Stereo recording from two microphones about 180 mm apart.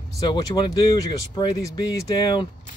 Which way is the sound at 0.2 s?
25° left (ahead or behind).